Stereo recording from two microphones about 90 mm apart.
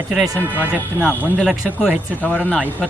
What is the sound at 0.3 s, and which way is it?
Speech, 20° right (ahead or behind).